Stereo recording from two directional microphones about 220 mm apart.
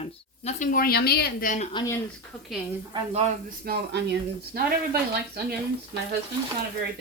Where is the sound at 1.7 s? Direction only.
20° left (ahead or behind).